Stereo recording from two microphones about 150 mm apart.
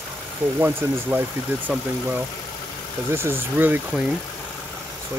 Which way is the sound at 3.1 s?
15° right (ahead or behind).